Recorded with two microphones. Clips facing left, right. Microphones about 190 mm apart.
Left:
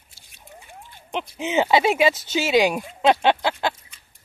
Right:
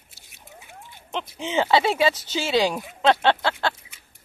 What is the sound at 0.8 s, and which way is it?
Speech, 15° left (ahead or behind).